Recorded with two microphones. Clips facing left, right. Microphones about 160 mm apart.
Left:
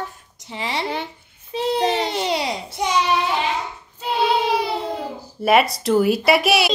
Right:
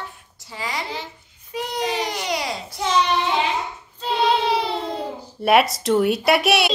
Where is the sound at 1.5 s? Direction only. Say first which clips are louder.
Left 6 dB; 25° left (ahead or behind).